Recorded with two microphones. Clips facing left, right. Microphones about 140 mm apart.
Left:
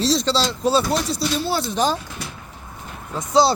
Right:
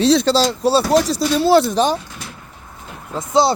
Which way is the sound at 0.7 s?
35° right (ahead or behind).